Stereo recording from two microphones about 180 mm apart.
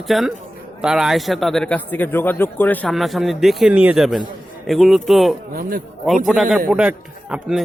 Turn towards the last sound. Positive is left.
turn(degrees=-5)  # may be behind; listen again after turning